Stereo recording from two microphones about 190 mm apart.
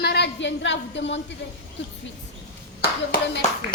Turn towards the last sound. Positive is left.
turn(degrees=55)  # may be behind; listen again after turning